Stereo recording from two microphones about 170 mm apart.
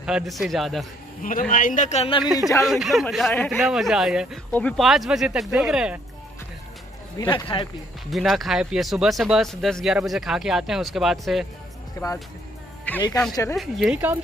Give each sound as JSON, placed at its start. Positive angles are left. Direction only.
{"t": 0.0, "sound": "speech", "side_deg": -5}
{"t": 1.2, "sound": "a man's voice", "side_deg": 55}
{"t": 2.6, "sound": "speech", "side_deg": 0}
{"t": 7.2, "sound": "speech", "side_deg": 25}
{"t": 8.1, "sound": "speech", "side_deg": 0}
{"t": 12.0, "sound": "speech", "side_deg": 20}
{"t": 12.9, "sound": "a sound", "side_deg": 10}
{"t": 13.6, "sound": "speech", "side_deg": 0}